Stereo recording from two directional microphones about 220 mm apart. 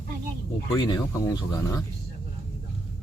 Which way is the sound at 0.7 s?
15° left (ahead or behind).